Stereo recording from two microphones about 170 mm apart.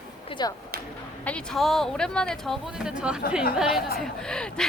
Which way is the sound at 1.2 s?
5° left (ahead or behind).